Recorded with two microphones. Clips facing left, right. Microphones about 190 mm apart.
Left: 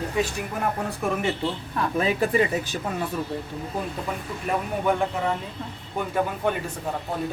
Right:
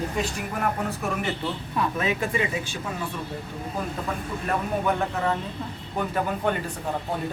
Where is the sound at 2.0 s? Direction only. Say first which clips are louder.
Left 8 dB; 35° left (ahead or behind).